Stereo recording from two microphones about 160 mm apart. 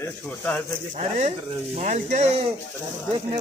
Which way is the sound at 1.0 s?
50° right (ahead or behind).